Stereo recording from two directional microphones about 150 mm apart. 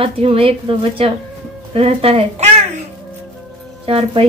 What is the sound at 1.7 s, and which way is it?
Speech, 40° right (ahead or behind).